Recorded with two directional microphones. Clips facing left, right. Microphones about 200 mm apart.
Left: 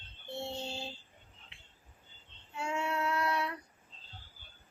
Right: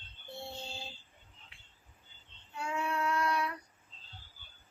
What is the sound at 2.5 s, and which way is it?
Child singing, 25° left (ahead or behind).